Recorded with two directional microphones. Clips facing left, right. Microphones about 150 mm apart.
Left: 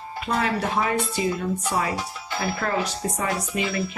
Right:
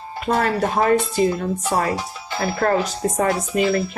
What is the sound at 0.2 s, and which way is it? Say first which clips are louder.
A woman's voice: right 5 dB; 45° right (ahead or behind).